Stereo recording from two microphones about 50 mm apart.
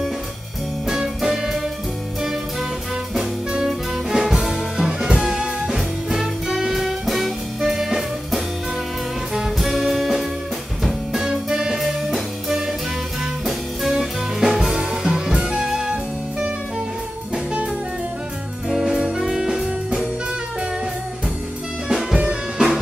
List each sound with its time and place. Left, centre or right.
0.8 s music: centre
3.5 s music: centre
18.7 s music: centre
21.8 s music: centre